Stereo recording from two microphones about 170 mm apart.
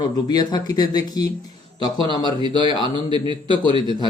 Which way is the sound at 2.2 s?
25° right (ahead or behind).